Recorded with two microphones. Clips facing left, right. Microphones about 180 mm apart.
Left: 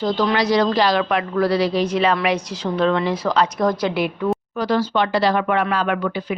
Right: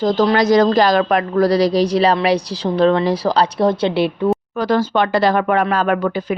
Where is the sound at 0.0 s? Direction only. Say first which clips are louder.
Right 5 dB; 45° right (ahead or behind).